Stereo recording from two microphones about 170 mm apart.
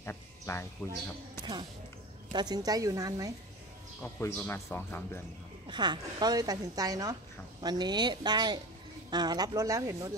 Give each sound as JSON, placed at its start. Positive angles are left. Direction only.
{"t": 0.0, "sound": "music", "side_deg": 15}
{"t": 1.4, "sound": "a woman's voice", "side_deg": -25}
{"t": 4.0, "sound": "speech", "side_deg": 10}
{"t": 5.7, "sound": "a woman's voice", "side_deg": -25}